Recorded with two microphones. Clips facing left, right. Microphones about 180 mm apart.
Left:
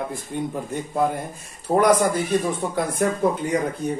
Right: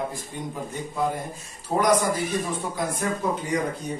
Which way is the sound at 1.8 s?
60° left (ahead or behind).